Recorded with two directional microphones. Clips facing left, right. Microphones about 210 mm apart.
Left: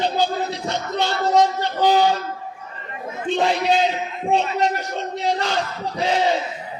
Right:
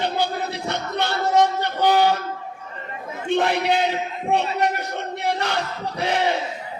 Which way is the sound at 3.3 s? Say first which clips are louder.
Left 1 dB; 60° right (ahead or behind).